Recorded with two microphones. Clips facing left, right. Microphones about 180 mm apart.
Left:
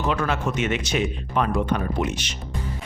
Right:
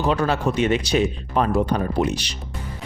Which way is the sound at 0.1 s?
35° right (ahead or behind).